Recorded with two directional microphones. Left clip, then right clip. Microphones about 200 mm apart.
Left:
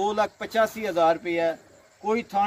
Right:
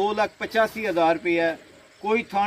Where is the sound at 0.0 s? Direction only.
25° left (ahead or behind).